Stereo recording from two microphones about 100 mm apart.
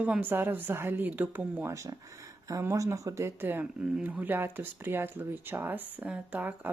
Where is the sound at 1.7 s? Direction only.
30° right (ahead or behind).